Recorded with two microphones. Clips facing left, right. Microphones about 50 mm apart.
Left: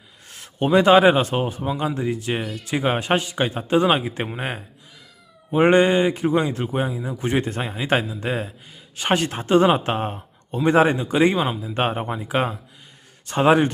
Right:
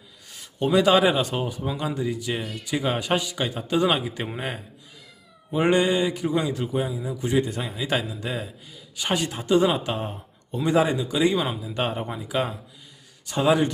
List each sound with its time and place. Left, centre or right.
0.3 s a sound: left
0.7 s a man's voice: left
2.0 s a man's voice: left
12.0 s speech: left
13.2 s a man's voice: left